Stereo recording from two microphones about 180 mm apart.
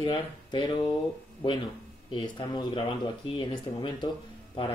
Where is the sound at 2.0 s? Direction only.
25° left (ahead or behind).